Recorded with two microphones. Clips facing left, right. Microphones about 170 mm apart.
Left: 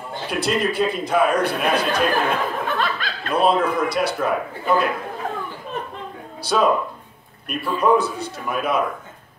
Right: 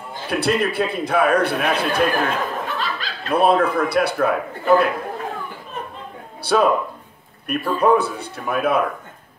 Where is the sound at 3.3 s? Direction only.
60° right (ahead or behind).